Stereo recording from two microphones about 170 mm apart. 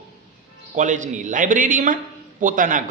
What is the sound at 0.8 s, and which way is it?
Speech, 45° right (ahead or behind).